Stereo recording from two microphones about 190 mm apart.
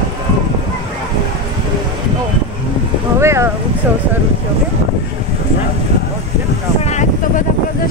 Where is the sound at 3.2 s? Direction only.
15° right (ahead or behind).